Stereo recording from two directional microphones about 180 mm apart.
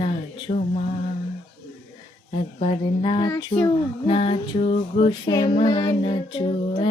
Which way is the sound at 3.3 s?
15° left (ahead or behind).